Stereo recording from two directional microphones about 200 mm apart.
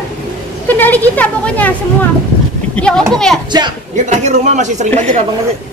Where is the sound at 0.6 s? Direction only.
10° left (ahead or behind).